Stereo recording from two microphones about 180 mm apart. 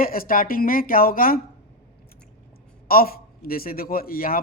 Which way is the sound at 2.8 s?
55° left (ahead or behind).